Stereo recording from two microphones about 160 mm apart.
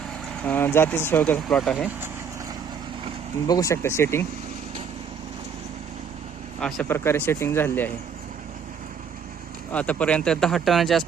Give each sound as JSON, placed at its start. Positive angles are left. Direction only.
{"t": 0.4, "sound": "speech", "side_deg": 10}
{"t": 3.4, "sound": "speech", "side_deg": 20}
{"t": 6.6, "sound": "speech", "side_deg": 0}
{"t": 6.8, "sound": "speech", "side_deg": 15}
{"t": 9.7, "sound": "speech", "side_deg": 10}